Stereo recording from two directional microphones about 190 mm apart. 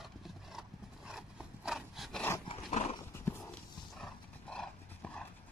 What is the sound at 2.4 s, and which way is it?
Dog, 35° left (ahead or behind).